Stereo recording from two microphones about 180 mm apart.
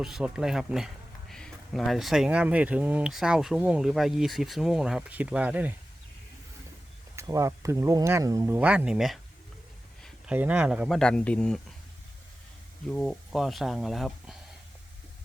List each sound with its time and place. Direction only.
0.0 s speech: 5° right (ahead or behind)
7.2 s speech: 15° right (ahead or behind)
8.5 s speech: 5° right (ahead or behind)
12.9 s speech: centre (ahead or behind)